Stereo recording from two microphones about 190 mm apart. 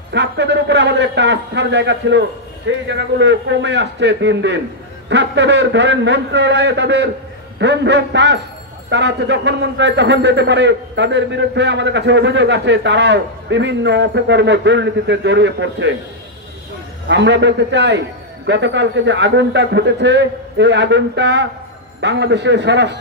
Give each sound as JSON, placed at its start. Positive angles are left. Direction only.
{"t": 0.1, "sound": "a man's voice", "side_deg": -65}
{"t": 17.1, "sound": "a man's voice", "side_deg": -65}